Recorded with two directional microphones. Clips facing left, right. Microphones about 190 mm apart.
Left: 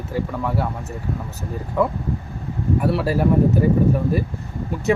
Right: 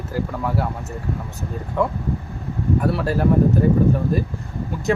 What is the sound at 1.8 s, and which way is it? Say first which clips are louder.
Speech: left 1 dB; 5° left (ahead or behind).